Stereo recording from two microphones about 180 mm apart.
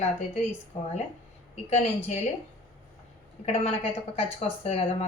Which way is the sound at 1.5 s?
35° left (ahead or behind).